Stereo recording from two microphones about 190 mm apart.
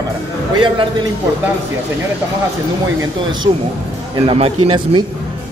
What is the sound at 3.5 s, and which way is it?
Speech, 20° right (ahead or behind).